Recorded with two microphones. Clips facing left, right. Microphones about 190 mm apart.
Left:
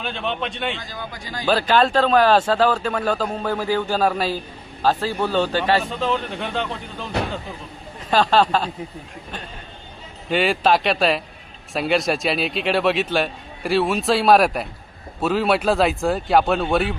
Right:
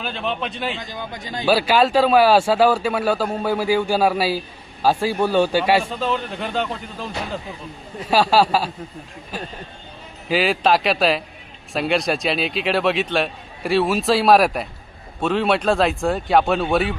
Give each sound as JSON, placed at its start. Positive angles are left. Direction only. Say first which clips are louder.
{"t": 0.0, "sound": "speech", "louder": "even", "side_deg": 0}
{"t": 0.8, "sound": "speech", "louder": "right 2 dB", "side_deg": -20}
{"t": 1.5, "sound": "a man's voice", "louder": "right 1 dB", "side_deg": -10}
{"t": 6.0, "sound": "speech", "louder": "even", "side_deg": 0}
{"t": 8.1, "sound": "a man's voice", "louder": "right 1 dB", "side_deg": -10}
{"t": 10.2, "sound": "speech", "louder": "even", "side_deg": 0}